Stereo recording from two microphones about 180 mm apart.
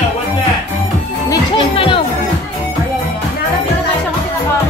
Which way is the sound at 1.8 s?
30° left (ahead or behind).